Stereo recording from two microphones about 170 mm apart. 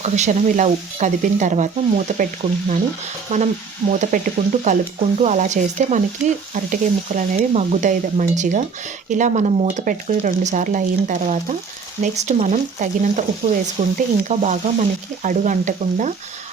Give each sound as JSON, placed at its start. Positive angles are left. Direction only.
{"t": 0.0, "sound": "speech", "side_deg": -45}